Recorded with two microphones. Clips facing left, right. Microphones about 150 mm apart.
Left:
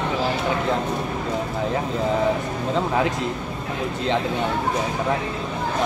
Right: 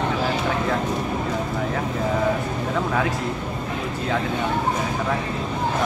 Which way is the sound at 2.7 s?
20° left (ahead or behind).